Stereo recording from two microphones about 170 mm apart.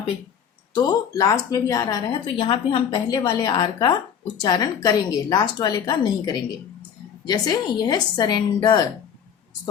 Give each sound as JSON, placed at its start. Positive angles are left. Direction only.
{"t": 0.7, "sound": "a woman's voice", "side_deg": 25}